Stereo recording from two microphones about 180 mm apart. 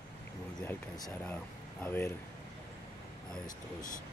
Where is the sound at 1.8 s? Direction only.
10° left (ahead or behind).